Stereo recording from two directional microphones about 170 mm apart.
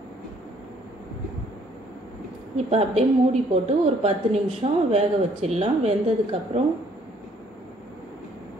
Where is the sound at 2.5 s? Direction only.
35° right (ahead or behind).